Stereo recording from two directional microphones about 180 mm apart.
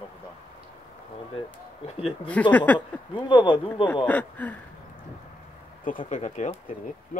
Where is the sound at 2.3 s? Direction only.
10° left (ahead or behind).